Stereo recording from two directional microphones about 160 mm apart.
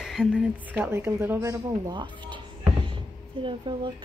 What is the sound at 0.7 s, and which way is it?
Speech, 15° right (ahead or behind).